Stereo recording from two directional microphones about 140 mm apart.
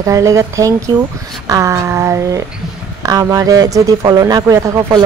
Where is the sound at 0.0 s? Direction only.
20° right (ahead or behind).